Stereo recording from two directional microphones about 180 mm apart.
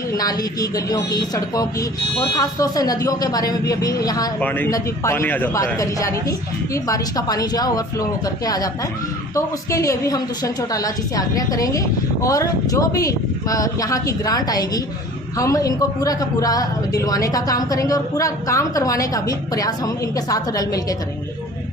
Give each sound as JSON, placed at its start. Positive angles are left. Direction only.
{"t": 0.2, "sound": "a woman's voice", "side_deg": 20}